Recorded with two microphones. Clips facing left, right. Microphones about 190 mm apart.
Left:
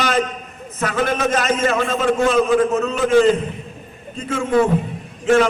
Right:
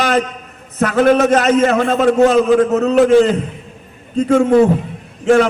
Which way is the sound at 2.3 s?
40° right (ahead or behind).